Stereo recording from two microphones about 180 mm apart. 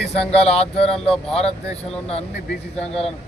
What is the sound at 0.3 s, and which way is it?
Speech, 35° left (ahead or behind).